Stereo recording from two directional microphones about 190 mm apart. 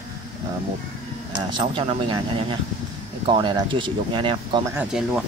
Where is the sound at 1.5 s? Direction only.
25° right (ahead or behind).